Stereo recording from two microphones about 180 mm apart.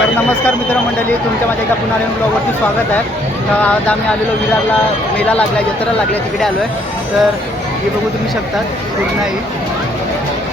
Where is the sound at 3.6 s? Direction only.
5° left (ahead or behind).